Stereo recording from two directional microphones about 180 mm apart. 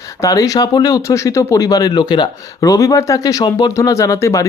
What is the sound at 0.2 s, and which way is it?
Speech, 20° left (ahead or behind).